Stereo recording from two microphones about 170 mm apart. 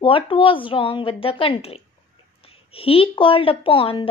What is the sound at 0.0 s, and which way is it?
A woman's voice, 30° left (ahead or behind).